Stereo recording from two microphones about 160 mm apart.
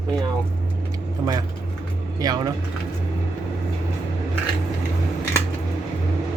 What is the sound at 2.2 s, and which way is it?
Speech, 25° right (ahead or behind).